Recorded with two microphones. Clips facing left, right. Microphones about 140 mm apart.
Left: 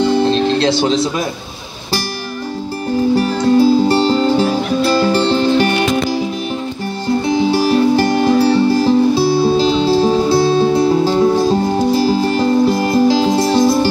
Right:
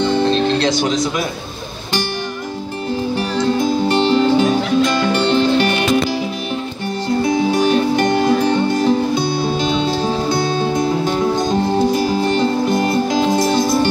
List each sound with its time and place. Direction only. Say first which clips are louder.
0.0 s music: left 2 dB; 30° left (ahead or behind)
3.2 s music: left 5 dB; 35° left (ahead or behind)
7.2 s music: left 2 dB; 30° left (ahead or behind)